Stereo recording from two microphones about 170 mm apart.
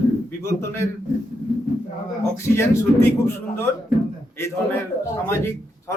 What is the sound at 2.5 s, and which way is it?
Speech, 15° left (ahead or behind).